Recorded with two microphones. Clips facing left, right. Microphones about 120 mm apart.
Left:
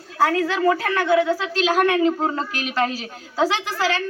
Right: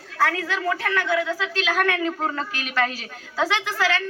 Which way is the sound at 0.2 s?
30° left (ahead or behind).